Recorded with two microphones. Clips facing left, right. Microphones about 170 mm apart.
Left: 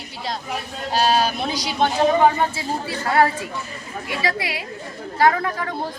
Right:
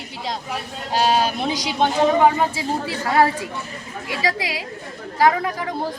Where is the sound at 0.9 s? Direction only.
15° right (ahead or behind).